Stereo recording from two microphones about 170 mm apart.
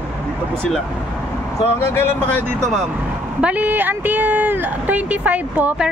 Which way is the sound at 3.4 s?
10° right (ahead or behind).